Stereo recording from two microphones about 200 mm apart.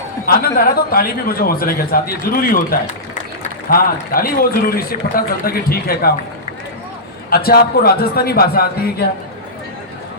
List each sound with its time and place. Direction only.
0.3 s a man's voice: 50° left (ahead or behind)
7.3 s a man's voice: 50° left (ahead or behind)